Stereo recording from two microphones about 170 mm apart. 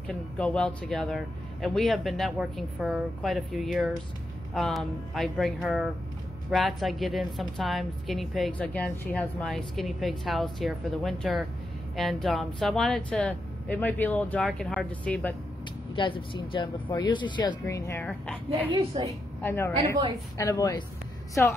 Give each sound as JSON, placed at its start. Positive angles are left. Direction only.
{"t": 0.1, "sound": "a woman's voice", "side_deg": 5}
{"t": 15.9, "sound": "speech", "side_deg": 30}
{"t": 18.0, "sound": "a woman's voice", "side_deg": 5}
{"t": 18.7, "sound": "a woman's voice", "side_deg": -25}
{"t": 19.4, "sound": "a woman's voice", "side_deg": 15}